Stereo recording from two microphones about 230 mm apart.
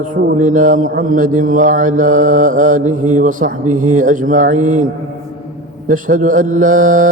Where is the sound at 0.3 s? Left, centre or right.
Right.